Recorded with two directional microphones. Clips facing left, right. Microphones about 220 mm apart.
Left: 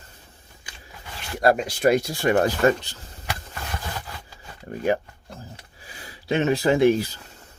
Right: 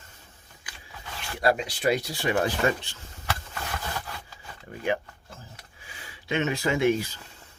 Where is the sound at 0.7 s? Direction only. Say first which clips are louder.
Left 1 dB; 25° left (ahead or behind).